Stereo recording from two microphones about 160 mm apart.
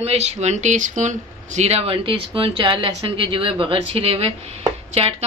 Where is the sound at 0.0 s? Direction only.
40° right (ahead or behind).